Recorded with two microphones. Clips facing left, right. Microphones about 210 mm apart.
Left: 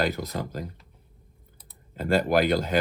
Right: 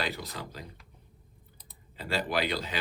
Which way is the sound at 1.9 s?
45° left (ahead or behind).